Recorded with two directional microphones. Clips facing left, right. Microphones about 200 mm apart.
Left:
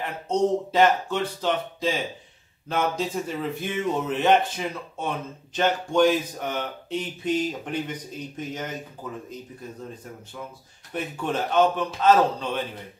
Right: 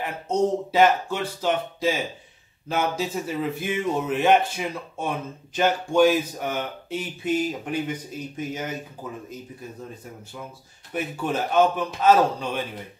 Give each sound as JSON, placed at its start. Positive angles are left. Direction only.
{"t": 0.0, "sound": "speech", "side_deg": -10}
{"t": 10.9, "sound": "speech", "side_deg": -5}